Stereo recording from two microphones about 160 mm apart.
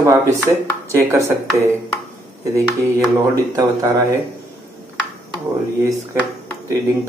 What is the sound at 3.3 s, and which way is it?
Speech, 20° right (ahead or behind).